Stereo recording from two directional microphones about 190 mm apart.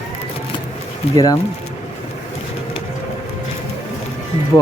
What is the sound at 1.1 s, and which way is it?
Speech, 20° left (ahead or behind).